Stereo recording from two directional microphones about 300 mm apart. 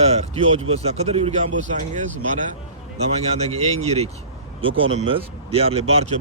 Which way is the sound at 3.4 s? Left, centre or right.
Right.